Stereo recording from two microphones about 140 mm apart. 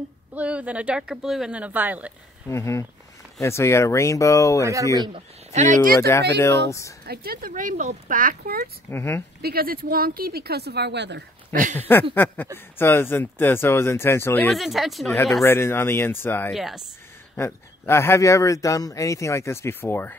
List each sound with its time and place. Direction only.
0.3 s speech: 10° right (ahead or behind)
2.5 s speech: 20° left (ahead or behind)
4.9 s speech: 30° right (ahead or behind)
5.5 s speech: 60° right (ahead or behind)
5.9 s speech: 20° left (ahead or behind)
7.1 s speech: 90° right
8.9 s speech: 20° left (ahead or behind)
9.4 s speech: 90° right
11.5 s speech: 65° right (ahead or behind)
11.9 s speech: 15° left (ahead or behind)
14.5 s speech: centre (ahead or behind)
15.4 s speech: 15° left (ahead or behind)
16.5 s speech: centre (ahead or behind)
17.4 s speech: 20° left (ahead or behind)